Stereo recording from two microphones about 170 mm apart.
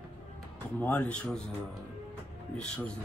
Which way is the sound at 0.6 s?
10° left (ahead or behind).